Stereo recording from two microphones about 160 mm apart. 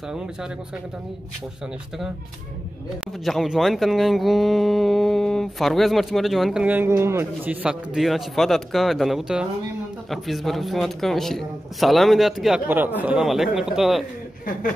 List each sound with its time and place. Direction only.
3.3 s speech: centre (ahead or behind)
7.6 s speech: centre (ahead or behind)